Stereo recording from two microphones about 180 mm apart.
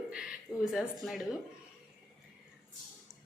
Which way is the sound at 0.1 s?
5° right (ahead or behind).